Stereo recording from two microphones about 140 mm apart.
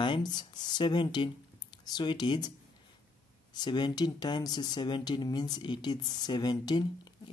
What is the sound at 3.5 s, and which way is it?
Speech, 30° left (ahead or behind).